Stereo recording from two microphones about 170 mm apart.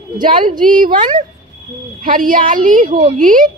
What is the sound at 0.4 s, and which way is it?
Speech, 50° right (ahead or behind).